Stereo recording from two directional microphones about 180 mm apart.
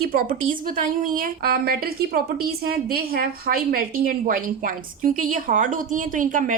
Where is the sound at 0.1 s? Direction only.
50° right (ahead or behind).